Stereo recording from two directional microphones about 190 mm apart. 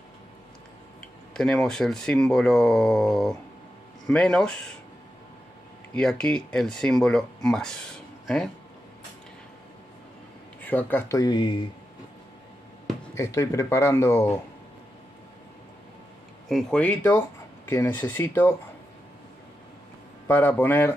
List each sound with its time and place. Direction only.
1.3 s speech: 5° left (ahead or behind)
5.9 s speech: 5° left (ahead or behind)
10.6 s speech: 10° left (ahead or behind)
13.1 s speech: 15° left (ahead or behind)
16.4 s speech: 5° left (ahead or behind)
20.2 s speech: 10° left (ahead or behind)